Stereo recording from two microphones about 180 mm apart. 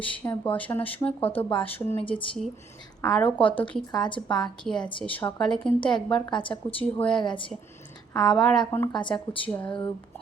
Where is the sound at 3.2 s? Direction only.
30° left (ahead or behind).